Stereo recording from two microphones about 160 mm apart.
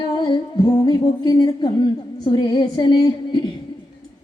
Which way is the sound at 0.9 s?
25° left (ahead or behind).